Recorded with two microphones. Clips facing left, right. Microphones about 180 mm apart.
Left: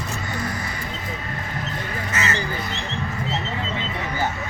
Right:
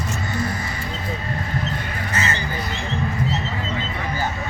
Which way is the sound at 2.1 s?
30° right (ahead or behind).